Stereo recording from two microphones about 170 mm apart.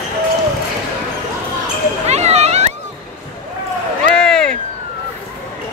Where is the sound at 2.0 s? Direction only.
40° right (ahead or behind).